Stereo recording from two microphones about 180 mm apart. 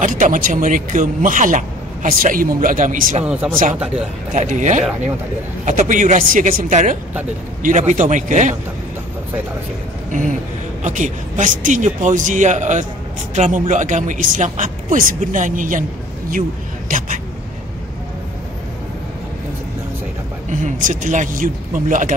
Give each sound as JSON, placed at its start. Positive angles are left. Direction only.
{"t": 0.0, "sound": "speech", "side_deg": -45}
{"t": 3.3, "sound": "speech", "side_deg": -10}
{"t": 4.3, "sound": "speech", "side_deg": -45}
{"t": 10.8, "sound": "speech", "side_deg": -45}
{"t": 20.4, "sound": "speech", "side_deg": -45}